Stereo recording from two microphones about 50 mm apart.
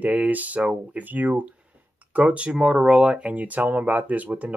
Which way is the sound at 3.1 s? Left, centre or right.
Right.